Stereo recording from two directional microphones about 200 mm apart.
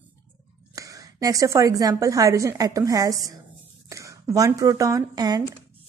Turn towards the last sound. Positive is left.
turn(degrees=-20)  # may be behind; listen again after turning